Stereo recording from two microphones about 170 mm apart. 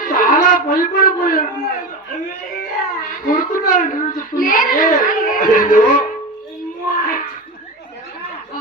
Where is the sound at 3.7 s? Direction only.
50° left (ahead or behind).